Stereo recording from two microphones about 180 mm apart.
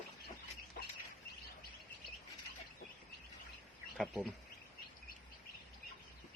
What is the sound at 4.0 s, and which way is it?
Speech, centre (ahead or behind).